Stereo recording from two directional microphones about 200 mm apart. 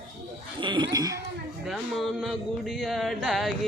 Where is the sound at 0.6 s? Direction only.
20° right (ahead or behind).